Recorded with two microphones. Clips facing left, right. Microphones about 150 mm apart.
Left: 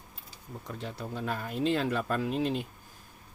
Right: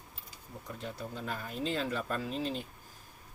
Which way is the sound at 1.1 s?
65° left (ahead or behind).